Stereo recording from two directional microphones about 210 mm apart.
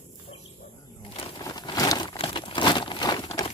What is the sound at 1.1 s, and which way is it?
Crumpling, 20° left (ahead or behind).